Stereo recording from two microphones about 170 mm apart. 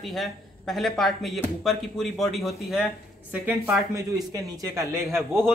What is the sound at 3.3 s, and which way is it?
Speech, 10° right (ahead or behind).